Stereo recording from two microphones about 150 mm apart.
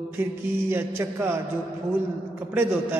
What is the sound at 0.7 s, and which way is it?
Speech, 15° right (ahead or behind).